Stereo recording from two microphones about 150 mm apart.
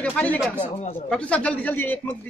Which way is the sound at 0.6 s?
45° left (ahead or behind).